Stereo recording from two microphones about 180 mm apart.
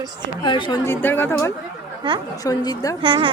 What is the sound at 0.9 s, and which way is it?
A woman's voice, 10° left (ahead or behind).